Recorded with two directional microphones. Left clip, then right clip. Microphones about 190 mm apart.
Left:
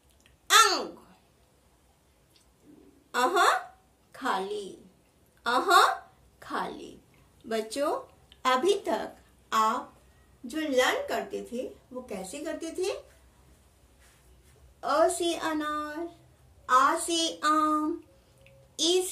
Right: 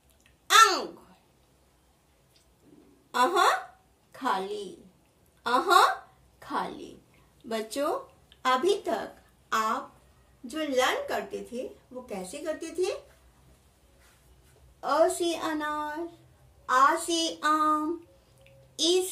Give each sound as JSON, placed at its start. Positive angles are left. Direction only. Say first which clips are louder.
{"t": 0.5, "sound": "babbling", "louder": "right 2 dB", "side_deg": 0}
{"t": 3.1, "sound": "a sound", "louder": "right 2 dB", "side_deg": -15}
{"t": 4.1, "sound": "a woman's voice", "louder": "right 1 dB", "side_deg": -20}
{"t": 8.3, "sound": "a woman's voice", "louder": "even", "side_deg": 10}
{"t": 14.8, "sound": "a child's voice", "louder": "even", "side_deg": -10}